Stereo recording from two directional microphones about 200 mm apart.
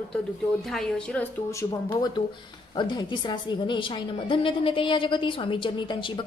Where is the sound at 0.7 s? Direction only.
5° left (ahead or behind).